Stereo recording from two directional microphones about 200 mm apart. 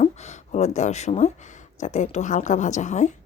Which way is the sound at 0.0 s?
35° left (ahead or behind).